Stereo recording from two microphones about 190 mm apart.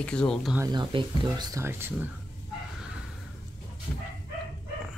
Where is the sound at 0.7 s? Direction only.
25° right (ahead or behind).